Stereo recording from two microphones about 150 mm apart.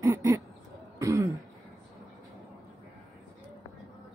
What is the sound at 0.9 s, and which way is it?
Throat clearing, 20° right (ahead or behind).